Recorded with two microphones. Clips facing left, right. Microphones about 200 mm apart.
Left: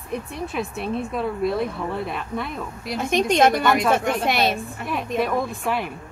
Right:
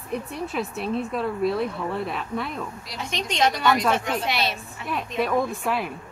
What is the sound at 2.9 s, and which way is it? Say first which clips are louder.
A woman's voice: left 13 dB; 50° left (ahead or behind).